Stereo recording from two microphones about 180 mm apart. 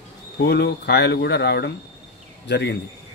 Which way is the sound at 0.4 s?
70° left (ahead or behind).